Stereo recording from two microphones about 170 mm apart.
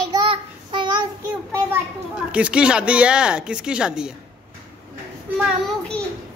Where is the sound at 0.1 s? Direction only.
25° right (ahead or behind).